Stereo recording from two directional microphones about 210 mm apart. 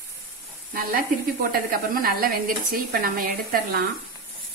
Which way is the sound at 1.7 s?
45° right (ahead or behind).